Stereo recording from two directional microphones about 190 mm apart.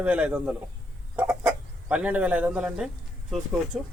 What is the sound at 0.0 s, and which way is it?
Speech, 5° right (ahead or behind).